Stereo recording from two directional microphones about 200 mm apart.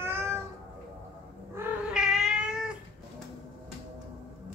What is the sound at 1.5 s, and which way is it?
Cat, centre (ahead or behind).